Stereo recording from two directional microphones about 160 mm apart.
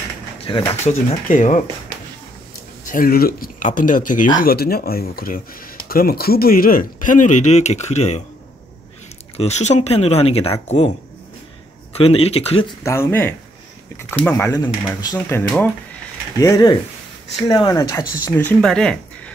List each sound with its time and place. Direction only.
0.5 s speech: 30° left (ahead or behind)
0.8 s speech: 50° left (ahead or behind)
2.8 s speech: 60° left (ahead or behind)
4.4 s speech: 70° left (ahead or behind); by 8.2 s 45° left (ahead or behind)
9.4 s speech: 45° left (ahead or behind)
12.0 s speech: 40° left (ahead or behind)
12.8 s speech: 15° left (ahead or behind)
14.5 s speech: 25° left (ahead or behind)
16.3 s speech: 20° left (ahead or behind)
18.4 s speech: 5° left (ahead or behind)